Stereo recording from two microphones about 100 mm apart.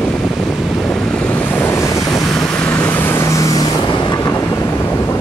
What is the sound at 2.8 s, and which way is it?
Vehicle, 20° left (ahead or behind).